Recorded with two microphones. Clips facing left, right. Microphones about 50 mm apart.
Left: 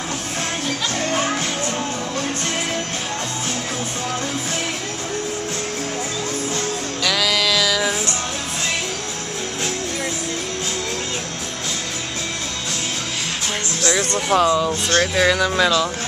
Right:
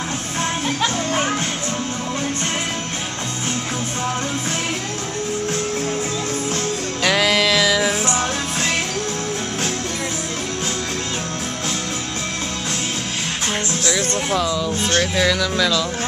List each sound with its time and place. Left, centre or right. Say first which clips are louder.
7.0 s music: right 3 dB; right
14.3 s speech: left 7 dB; left